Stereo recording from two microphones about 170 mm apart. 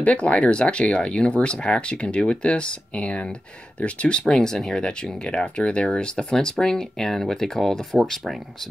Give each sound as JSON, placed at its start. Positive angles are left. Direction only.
{"t": 0.0, "sound": "speech", "side_deg": 5}